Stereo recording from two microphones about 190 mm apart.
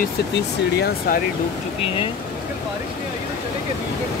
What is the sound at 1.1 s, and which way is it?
Speech, 50° left (ahead or behind).